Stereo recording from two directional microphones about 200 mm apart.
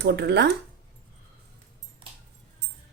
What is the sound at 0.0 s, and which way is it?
Speech, 55° right (ahead or behind).